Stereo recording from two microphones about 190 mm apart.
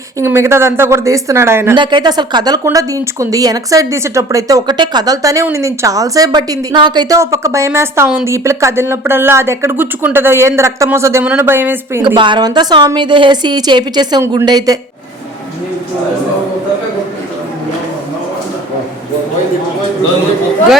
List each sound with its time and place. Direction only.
0.2 s speech: 15° right (ahead or behind)
1.7 s speech: 25° right (ahead or behind)
12.0 s a woman's voice: 25° right (ahead or behind)